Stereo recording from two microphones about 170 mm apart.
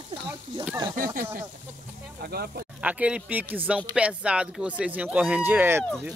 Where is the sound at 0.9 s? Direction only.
55° right (ahead or behind).